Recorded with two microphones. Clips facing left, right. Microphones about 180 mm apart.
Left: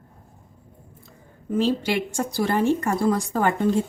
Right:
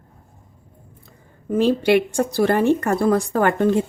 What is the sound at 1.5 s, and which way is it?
A woman's voice, 60° right (ahead or behind).